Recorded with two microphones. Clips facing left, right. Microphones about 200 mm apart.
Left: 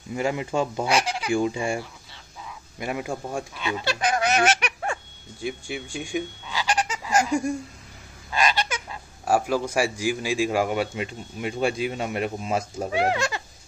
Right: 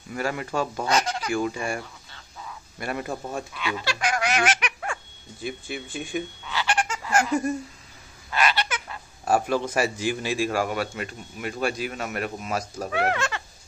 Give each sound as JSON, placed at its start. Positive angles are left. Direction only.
{"t": 0.1, "sound": "a man's voice", "side_deg": 15}
{"t": 1.3, "sound": "speech", "side_deg": 25}
{"t": 2.8, "sound": "a man's voice", "side_deg": 15}
{"t": 5.9, "sound": "honk", "side_deg": 15}
{"t": 8.3, "sound": "a sound", "side_deg": 20}
{"t": 9.2, "sound": "a man's voice", "side_deg": 10}
{"t": 12.9, "sound": "a man's voice", "side_deg": 15}